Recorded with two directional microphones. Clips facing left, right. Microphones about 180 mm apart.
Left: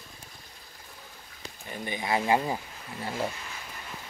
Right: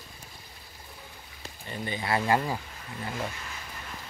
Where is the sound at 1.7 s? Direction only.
15° left (ahead or behind).